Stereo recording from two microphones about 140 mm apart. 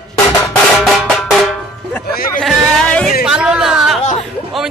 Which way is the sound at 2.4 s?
5° left (ahead or behind).